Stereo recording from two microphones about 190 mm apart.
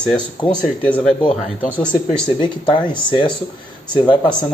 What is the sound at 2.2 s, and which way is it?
Speech, 25° left (ahead or behind).